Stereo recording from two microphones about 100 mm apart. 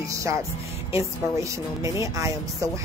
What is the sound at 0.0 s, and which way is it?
A woman's voice, 30° right (ahead or behind).